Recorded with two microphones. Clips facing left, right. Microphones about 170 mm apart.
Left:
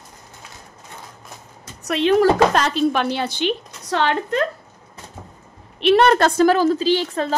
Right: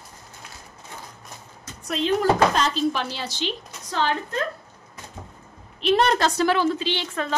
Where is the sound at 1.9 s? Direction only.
75° left (ahead or behind).